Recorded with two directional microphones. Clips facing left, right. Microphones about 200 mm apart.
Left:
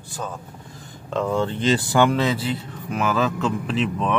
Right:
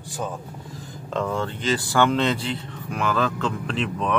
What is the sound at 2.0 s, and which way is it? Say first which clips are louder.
Speech: even; 5° left (ahead or behind).